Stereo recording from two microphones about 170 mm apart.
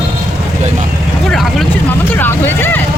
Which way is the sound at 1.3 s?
Centre (ahead or behind).